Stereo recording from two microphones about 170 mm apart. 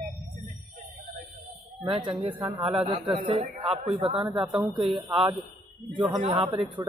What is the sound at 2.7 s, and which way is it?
A man's voice, 30° right (ahead or behind).